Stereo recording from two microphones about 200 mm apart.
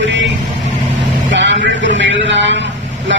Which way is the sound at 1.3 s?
65° right (ahead or behind).